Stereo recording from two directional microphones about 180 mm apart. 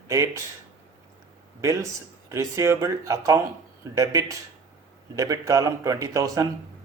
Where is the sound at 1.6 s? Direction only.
15° right (ahead or behind).